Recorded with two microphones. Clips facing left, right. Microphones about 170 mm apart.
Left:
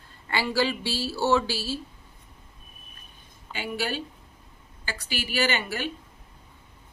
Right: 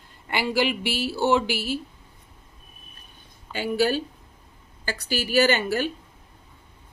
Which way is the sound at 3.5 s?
40° right (ahead or behind).